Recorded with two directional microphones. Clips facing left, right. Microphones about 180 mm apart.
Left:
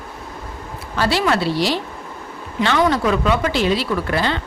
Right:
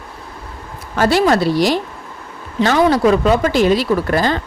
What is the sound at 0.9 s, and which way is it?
A woman's voice, 45° right (ahead or behind).